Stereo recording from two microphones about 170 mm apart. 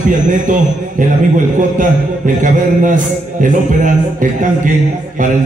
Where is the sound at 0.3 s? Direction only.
50° right (ahead or behind).